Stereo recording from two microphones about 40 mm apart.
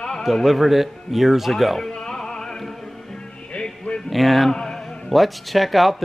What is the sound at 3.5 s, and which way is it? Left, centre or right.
Music, left.